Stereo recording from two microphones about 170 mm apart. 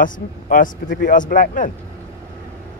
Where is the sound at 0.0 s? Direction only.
50° left (ahead or behind).